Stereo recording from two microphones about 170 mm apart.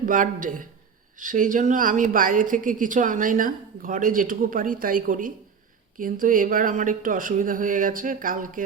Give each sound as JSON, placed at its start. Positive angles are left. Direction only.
{"t": 0.0, "sound": "a woman's voice", "side_deg": -50}